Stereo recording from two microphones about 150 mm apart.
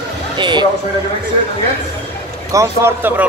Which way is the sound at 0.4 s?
30° right (ahead or behind).